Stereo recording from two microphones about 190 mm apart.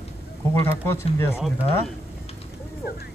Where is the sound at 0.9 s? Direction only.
15° left (ahead or behind).